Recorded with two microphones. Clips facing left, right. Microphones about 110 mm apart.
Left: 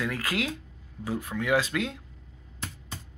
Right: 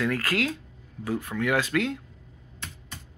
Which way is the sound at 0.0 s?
15° left (ahead or behind).